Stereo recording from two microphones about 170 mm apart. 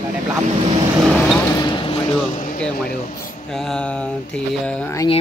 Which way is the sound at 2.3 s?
50° left (ahead or behind).